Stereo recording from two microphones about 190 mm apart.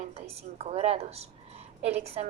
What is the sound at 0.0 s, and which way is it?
A woman's voice, 30° right (ahead or behind).